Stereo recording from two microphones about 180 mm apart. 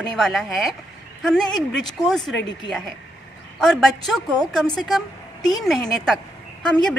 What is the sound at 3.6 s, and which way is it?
A woman's voice, 5° left (ahead or behind).